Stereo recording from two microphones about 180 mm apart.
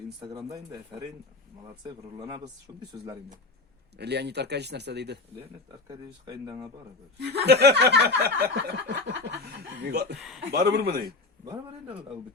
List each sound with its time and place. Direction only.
0.2 s speech: 25° right (ahead or behind)
3.9 s speech: 65° right (ahead or behind)
5.9 s speech: 20° right (ahead or behind)
7.2 s a sound: 65° right (ahead or behind)
10.2 s speech: centre (ahead or behind)
10.5 s a sound: 65° right (ahead or behind)
11.4 s speech: 20° right (ahead or behind)